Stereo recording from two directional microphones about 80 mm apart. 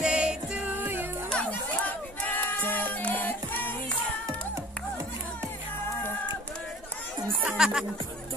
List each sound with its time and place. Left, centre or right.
0.0 s music: centre
0.7 s music: right
1.3 s crowd: centre
7.4 s music: centre